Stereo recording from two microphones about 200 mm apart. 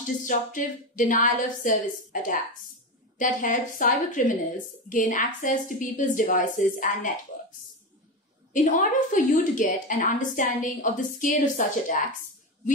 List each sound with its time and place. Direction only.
0.0 s a woman's voice: 40° left (ahead or behind)
8.5 s a woman's voice: 40° left (ahead or behind)